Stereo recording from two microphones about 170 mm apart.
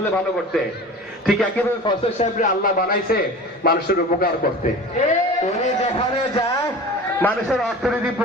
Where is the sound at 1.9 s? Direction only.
25° left (ahead or behind).